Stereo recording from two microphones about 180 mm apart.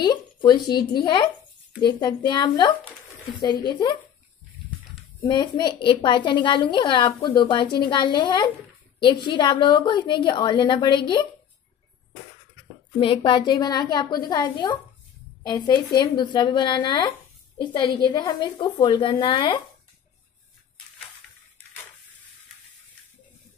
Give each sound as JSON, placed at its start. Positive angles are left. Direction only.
{"t": 0.0, "sound": "a woman's voice", "side_deg": 25}
{"t": 5.2, "sound": "a woman's voice", "side_deg": 25}
{"t": 13.0, "sound": "a woman's voice", "side_deg": 30}